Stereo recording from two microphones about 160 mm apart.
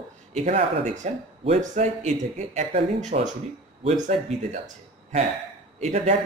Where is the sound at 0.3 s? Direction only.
45° right (ahead or behind).